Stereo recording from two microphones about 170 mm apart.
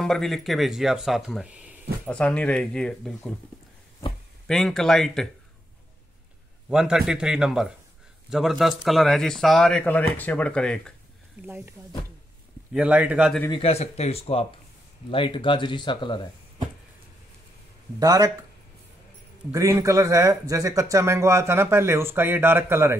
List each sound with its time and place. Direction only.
0.0 s speech: centre (ahead or behind)
2.0 s speech: 5° left (ahead or behind)
4.5 s speech: 5° left (ahead or behind)
6.7 s speech: 5° right (ahead or behind)
11.4 s speech: 10° right (ahead or behind)
12.7 s speech: 10° right (ahead or behind)
13.5 s speech: 35° left (ahead or behind)
17.9 s speech: 20° right (ahead or behind)
19.5 s speech: 20° right (ahead or behind)